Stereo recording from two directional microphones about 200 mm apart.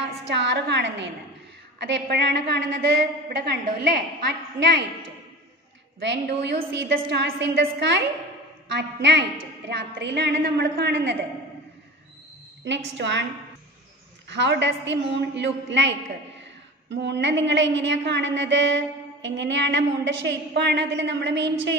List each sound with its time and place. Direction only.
0.3 s a woman's voice: 60° right (ahead or behind)
6.0 s a woman's voice: 60° right (ahead or behind)
12.6 s a woman's voice: 60° right (ahead or behind)
14.3 s a woman's voice: 60° right (ahead or behind)